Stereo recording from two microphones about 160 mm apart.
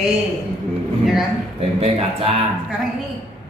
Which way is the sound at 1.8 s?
40° right (ahead or behind).